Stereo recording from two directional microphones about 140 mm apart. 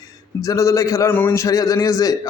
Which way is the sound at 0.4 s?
20° left (ahead or behind).